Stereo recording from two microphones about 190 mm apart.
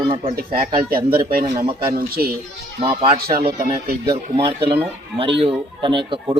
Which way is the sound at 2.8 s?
30° right (ahead or behind).